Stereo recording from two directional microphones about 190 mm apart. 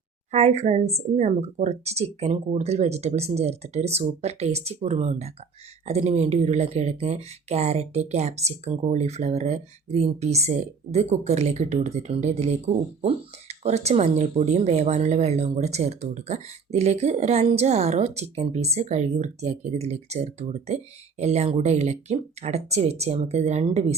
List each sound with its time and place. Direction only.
0.3 s speech: 35° right (ahead or behind)